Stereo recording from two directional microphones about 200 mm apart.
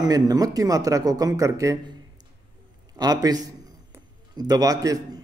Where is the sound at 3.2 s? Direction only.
20° right (ahead or behind).